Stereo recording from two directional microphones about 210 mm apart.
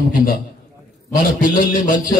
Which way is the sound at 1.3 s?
40° left (ahead or behind).